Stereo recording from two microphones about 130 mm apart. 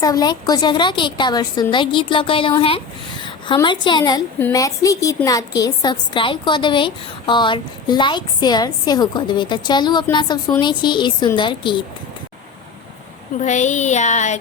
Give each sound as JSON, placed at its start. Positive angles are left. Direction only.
{"t": 0.0, "sound": "a woman's voice", "side_deg": 30}
{"t": 13.4, "sound": "speech", "side_deg": 65}